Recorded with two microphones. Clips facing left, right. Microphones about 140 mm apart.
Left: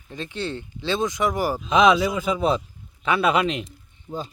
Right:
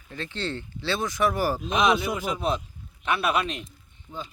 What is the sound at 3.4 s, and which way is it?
Speech, 90° left.